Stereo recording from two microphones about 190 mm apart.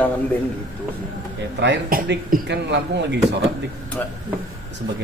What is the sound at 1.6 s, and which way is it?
Speech, 65° right (ahead or behind).